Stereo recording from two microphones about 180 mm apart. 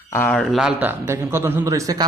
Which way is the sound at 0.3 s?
Centre (ahead or behind).